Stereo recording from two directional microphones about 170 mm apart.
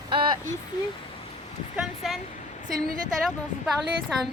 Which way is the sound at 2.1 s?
Centre (ahead or behind).